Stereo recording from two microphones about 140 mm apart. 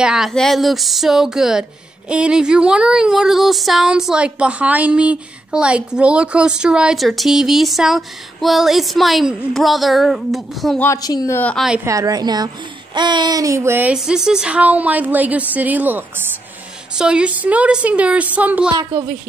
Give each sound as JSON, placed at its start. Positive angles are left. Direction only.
{"t": 0.0, "sound": "speech", "side_deg": -5}
{"t": 11.0, "sound": "a woman's voice", "side_deg": 30}
{"t": 11.3, "sound": "a woman's voice", "side_deg": 10}
{"t": 11.8, "sound": "speech", "side_deg": -25}
{"t": 13.9, "sound": "a woman's voice", "side_deg": -5}